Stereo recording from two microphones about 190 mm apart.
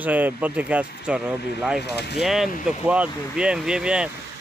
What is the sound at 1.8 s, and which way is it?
Speech, 60° left (ahead or behind).